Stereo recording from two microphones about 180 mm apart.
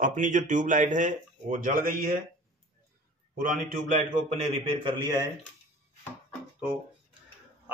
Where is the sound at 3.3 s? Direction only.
50° right (ahead or behind).